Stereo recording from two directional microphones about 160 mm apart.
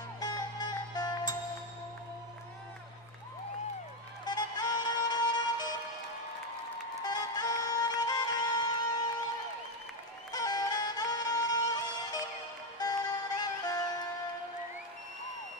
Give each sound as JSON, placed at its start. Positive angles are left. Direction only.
{"t": 0.2, "sound": "music", "side_deg": 25}
{"t": 4.2, "sound": "music", "side_deg": 25}
{"t": 7.0, "sound": "music", "side_deg": 25}
{"t": 10.3, "sound": "music", "side_deg": 25}